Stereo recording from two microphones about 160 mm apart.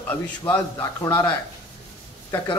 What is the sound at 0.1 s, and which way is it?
A man's voice, 15° left (ahead or behind).